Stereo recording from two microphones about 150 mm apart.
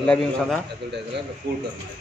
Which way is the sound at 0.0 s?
5° left (ahead or behind).